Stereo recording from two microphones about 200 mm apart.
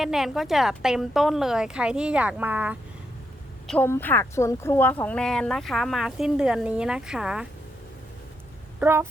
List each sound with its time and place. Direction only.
0.0 s speech: centre (ahead or behind)
3.7 s speech: 10° left (ahead or behind)
8.8 s speech: 10° right (ahead or behind)